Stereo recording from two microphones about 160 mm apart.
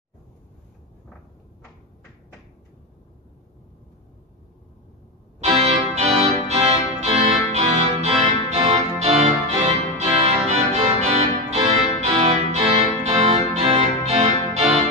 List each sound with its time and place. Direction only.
5.6 s music: 45° right (ahead or behind)